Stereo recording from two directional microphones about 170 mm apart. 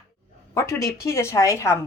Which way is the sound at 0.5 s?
15° left (ahead or behind).